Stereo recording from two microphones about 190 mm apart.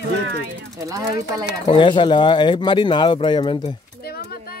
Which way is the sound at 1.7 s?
25° left (ahead or behind).